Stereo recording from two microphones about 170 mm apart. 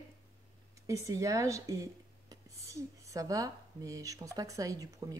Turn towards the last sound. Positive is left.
turn(degrees=-20)  # may be behind; listen again after turning